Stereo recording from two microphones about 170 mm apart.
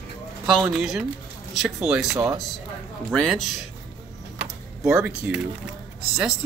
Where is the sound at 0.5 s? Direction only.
Centre (ahead or behind).